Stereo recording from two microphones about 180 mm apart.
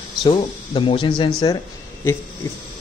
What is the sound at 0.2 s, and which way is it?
Speech, 30° left (ahead or behind).